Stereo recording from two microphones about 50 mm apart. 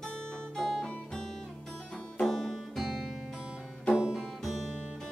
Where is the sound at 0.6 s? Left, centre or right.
Centre.